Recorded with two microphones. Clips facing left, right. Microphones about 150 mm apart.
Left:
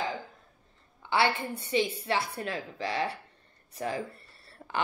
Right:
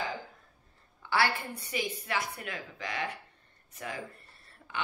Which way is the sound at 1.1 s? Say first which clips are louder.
Left 3 dB; 20° left (ahead or behind).